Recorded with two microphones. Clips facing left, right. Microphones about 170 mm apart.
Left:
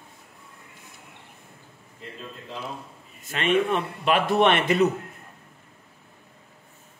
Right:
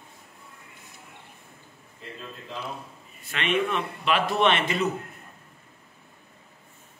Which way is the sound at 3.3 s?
45° left (ahead or behind).